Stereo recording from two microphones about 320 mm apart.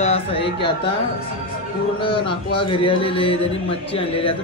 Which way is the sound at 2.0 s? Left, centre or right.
Centre.